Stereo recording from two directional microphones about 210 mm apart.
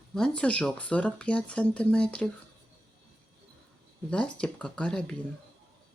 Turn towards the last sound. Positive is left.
turn(degrees=5)  # may be behind; listen again after turning